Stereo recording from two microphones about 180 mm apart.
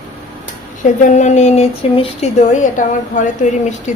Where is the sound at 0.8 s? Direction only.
45° left (ahead or behind).